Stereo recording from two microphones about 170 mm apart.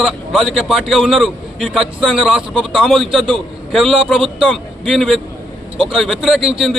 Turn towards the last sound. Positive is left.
turn(degrees=-5)  # may be behind; listen again after turning